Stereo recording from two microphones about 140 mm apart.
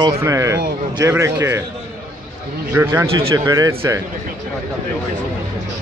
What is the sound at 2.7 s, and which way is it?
Speech, 20° right (ahead or behind).